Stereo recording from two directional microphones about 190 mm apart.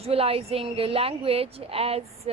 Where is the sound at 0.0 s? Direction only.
30° right (ahead or behind).